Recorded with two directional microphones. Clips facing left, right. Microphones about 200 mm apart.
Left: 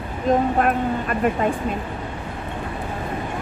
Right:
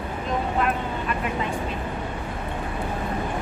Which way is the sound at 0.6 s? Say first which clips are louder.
Left 5 dB; 50° left (ahead or behind).